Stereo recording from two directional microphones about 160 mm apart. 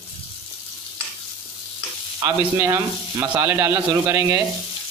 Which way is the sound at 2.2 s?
20° right (ahead or behind).